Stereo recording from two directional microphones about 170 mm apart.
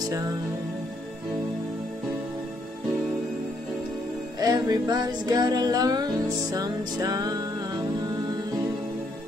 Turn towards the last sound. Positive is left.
turn(degrees=-20)  # may be behind; listen again after turning